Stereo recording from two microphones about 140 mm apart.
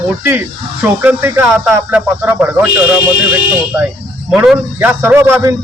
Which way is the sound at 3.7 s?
15° right (ahead or behind).